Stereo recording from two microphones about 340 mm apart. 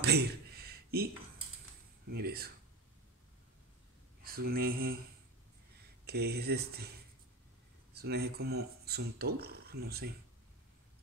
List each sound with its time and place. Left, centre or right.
0.0 s a sound: right
2.0 s speech: right
4.2 s speech: right
6.0 s speech: right
7.9 s speech: right